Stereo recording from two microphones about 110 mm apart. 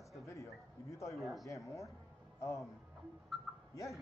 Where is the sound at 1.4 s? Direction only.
30° left (ahead or behind).